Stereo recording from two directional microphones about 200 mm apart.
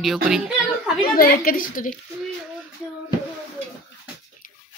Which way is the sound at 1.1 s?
45° left (ahead or behind).